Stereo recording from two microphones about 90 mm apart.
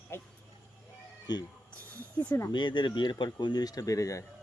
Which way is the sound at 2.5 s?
60° left (ahead or behind).